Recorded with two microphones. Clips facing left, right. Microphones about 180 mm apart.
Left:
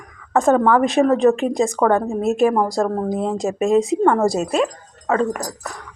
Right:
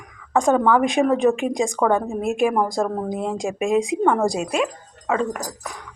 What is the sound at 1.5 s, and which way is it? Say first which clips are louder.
Speech: left 3 dB; 5° left (ahead or behind).